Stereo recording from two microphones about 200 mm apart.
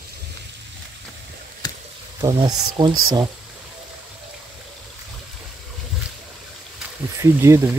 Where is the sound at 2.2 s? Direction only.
20° right (ahead or behind).